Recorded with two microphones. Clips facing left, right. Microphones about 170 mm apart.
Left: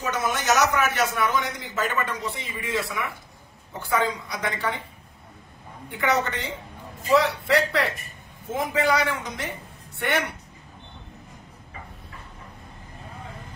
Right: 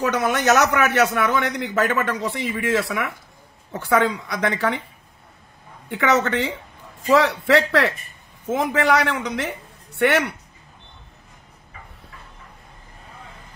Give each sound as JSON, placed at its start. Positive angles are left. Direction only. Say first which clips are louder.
{"t": 0.0, "sound": "a man's voice", "louder": "right 6 dB", "side_deg": -65}
{"t": 5.9, "sound": "a man's voice", "louder": "right 5 dB", "side_deg": -75}